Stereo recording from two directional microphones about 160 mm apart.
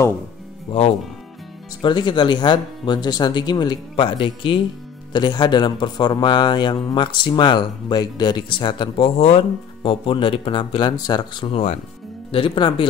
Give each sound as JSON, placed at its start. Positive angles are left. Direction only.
{"t": 0.7, "sound": "speech", "side_deg": 40}
{"t": 1.8, "sound": "speech", "side_deg": 30}